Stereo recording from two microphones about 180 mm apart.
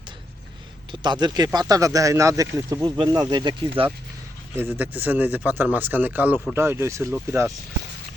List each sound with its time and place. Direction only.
0.9 s a man's voice: 25° right (ahead or behind)
4.6 s speech: 10° right (ahead or behind)